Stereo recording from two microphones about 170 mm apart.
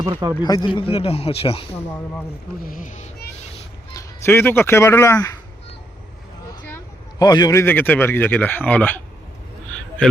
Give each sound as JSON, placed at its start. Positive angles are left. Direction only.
{"t": 0.0, "sound": "speech", "side_deg": -20}
{"t": 0.4, "sound": "a man's voice", "side_deg": 25}
{"t": 2.6, "sound": "speech", "side_deg": 45}
{"t": 3.9, "sound": "speech", "side_deg": 15}
{"t": 7.2, "sound": "a man's voice", "side_deg": 25}